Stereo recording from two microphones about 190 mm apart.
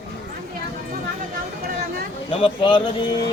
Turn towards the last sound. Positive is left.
turn(degrees=25)  # may be behind; listen again after turning